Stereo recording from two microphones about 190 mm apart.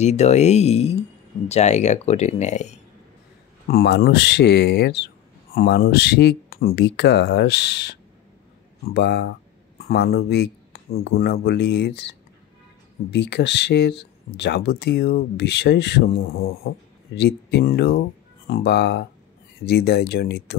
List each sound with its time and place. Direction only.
0.0 s speech: 35° left (ahead or behind)
3.6 s speech: 55° left (ahead or behind)